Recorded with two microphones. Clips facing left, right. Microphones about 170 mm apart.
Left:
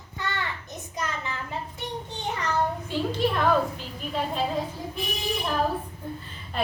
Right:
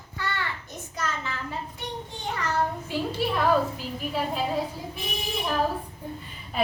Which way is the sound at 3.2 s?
10° right (ahead or behind).